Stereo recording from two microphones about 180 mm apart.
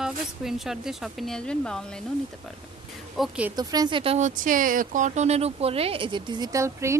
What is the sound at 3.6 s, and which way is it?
Speech, 20° right (ahead or behind).